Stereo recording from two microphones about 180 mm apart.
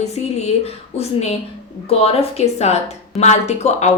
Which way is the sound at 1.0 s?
35° left (ahead or behind).